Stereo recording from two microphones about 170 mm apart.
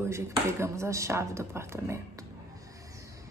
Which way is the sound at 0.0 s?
15° right (ahead or behind).